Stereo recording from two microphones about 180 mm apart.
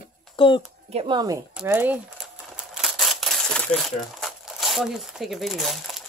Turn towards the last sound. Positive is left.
turn(degrees=0)  # may be behind; listen again after turning